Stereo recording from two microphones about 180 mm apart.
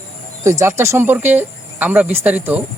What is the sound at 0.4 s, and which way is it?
Speech, 15° right (ahead or behind).